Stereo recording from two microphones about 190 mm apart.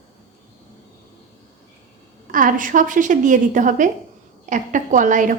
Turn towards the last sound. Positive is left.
turn(degrees=-45)  # may be behind; listen again after turning